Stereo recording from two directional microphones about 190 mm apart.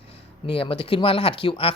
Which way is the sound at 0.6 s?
30° left (ahead or behind).